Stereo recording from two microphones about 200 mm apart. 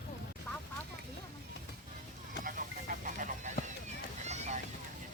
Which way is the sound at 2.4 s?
40° right (ahead or behind).